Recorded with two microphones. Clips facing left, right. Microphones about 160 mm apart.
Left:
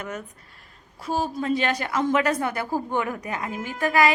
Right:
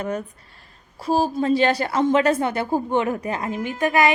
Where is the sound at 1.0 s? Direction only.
30° right (ahead or behind).